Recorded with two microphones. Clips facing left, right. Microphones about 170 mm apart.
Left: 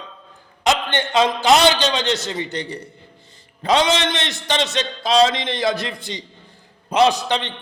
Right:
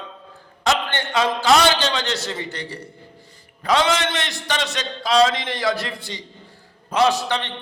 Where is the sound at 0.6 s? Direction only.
20° left (ahead or behind).